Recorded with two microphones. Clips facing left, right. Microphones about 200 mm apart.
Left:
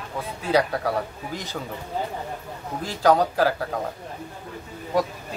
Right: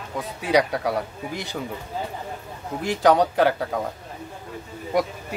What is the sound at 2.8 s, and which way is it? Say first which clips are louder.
Speech: right 1 dB; 15° right (ahead or behind).